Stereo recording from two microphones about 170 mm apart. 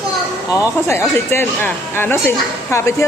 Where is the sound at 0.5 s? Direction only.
15° left (ahead or behind).